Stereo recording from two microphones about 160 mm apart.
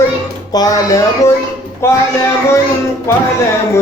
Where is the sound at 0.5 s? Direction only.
25° left (ahead or behind).